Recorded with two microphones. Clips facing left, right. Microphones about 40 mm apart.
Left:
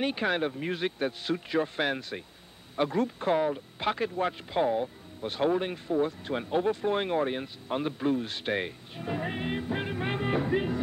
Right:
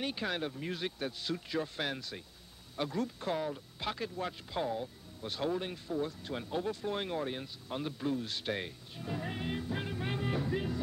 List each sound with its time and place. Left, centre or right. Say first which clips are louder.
0.0 s speech: left 8 dB; left